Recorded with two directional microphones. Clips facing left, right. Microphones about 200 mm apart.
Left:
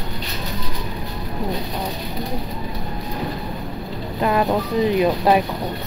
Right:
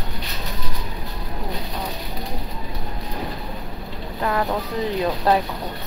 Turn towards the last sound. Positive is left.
turn(degrees=15)  # may be behind; listen again after turning